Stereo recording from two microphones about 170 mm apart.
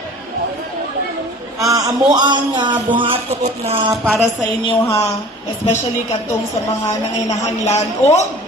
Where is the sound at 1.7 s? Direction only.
20° right (ahead or behind).